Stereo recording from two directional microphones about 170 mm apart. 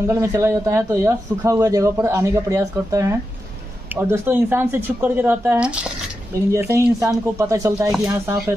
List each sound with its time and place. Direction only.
0.0 s a man's voice: 15° right (ahead or behind)